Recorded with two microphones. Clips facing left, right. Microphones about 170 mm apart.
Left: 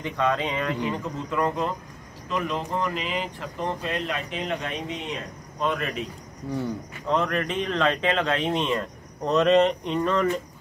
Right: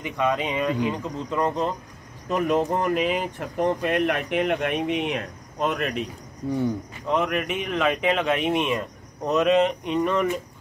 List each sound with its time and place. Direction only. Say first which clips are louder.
0.0 s speech: right 1 dB; 15° right (ahead or behind)
2.2 s speech: right 6 dB; 45° right (ahead or behind); by 5.2 s 65° right (ahead or behind)
6.6 s speech: right 4 dB; 10° right (ahead or behind)